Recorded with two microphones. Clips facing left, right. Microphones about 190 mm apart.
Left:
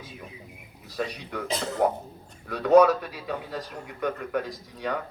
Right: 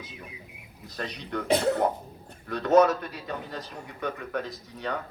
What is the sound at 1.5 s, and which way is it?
Speech, 60° right (ahead or behind).